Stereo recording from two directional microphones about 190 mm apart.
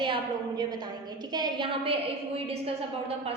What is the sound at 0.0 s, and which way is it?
A woman's voice, 25° right (ahead or behind).